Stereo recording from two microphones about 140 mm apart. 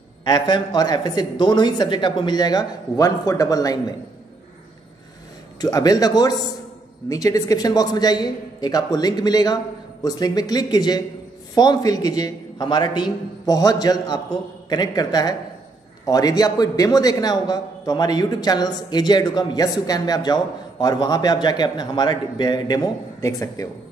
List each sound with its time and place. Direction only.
0.2 s speech: 30° left (ahead or behind)
5.6 s a man's voice: 25° left (ahead or behind)